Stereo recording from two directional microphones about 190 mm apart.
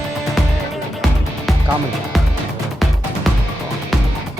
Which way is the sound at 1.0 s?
Centre (ahead or behind).